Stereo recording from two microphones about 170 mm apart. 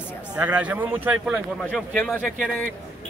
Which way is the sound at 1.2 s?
Centre (ahead or behind).